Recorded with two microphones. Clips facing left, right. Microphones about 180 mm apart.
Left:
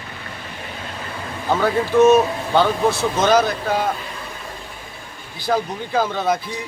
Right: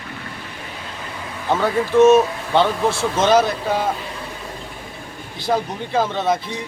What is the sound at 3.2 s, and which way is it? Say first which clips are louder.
Speech: right 1 dB; centre (ahead or behind).